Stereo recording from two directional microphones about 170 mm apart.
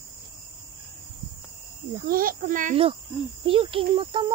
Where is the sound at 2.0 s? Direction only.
55° right (ahead or behind).